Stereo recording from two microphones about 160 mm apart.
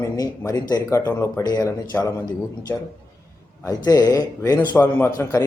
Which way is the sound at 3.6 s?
20° left (ahead or behind).